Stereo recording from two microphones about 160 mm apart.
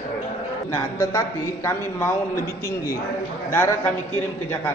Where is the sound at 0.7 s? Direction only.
20° left (ahead or behind).